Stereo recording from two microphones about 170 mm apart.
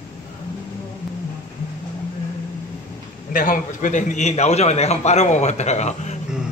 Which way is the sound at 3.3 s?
55° left (ahead or behind).